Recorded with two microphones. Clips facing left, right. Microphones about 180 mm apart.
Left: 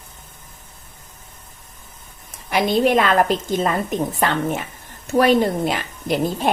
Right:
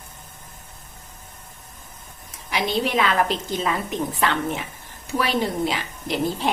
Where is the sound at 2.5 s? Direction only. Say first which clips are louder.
Left 7 dB; 50° left (ahead or behind).